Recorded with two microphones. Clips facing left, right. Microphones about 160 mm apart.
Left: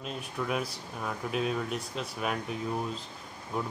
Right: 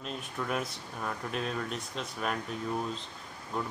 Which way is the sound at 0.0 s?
5° left (ahead or behind).